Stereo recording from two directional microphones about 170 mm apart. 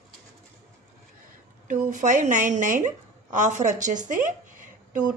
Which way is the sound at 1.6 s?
50° right (ahead or behind).